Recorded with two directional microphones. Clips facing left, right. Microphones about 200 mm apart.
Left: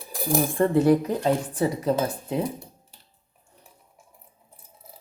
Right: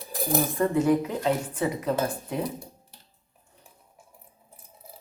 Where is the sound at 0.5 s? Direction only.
35° left (ahead or behind).